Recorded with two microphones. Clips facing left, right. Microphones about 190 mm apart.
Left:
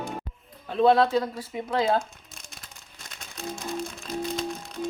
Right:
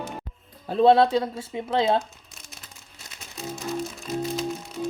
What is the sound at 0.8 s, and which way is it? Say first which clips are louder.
A woman's voice: right 2 dB; 30° right (ahead or behind).